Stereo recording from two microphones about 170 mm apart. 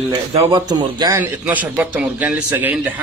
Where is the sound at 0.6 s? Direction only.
25° right (ahead or behind).